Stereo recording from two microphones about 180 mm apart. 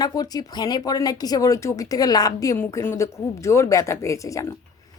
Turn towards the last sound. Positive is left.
turn(degrees=15)  # may be behind; listen again after turning